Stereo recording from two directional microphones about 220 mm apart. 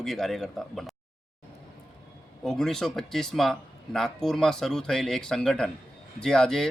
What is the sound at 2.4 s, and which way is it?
A man's voice, centre (ahead or behind).